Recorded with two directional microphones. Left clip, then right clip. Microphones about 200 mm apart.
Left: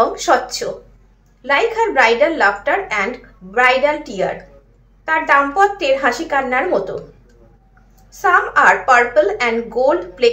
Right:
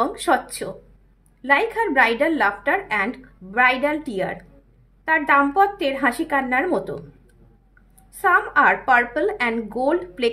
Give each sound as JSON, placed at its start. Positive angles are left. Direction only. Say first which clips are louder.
{"t": 0.1, "sound": "a woman's voice", "louder": "left 5 dB", "side_deg": -50}
{"t": 8.2, "sound": "a woman's voice", "louder": "left 4 dB", "side_deg": -45}